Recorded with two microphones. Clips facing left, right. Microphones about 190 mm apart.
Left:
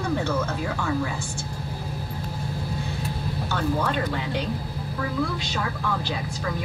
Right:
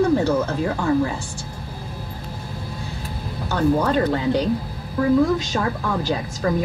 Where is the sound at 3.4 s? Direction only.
40° right (ahead or behind).